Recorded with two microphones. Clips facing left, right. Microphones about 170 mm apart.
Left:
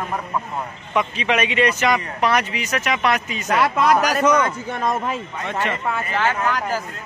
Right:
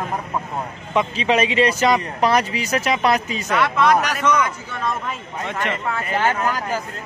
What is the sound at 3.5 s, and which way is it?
A man's voice, 40° left (ahead or behind).